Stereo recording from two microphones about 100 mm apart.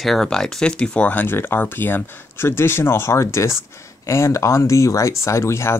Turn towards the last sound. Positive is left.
turn(degrees=30)  # may be behind; listen again after turning